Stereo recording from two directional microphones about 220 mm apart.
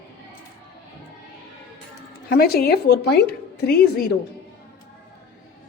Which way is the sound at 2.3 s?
45° left (ahead or behind).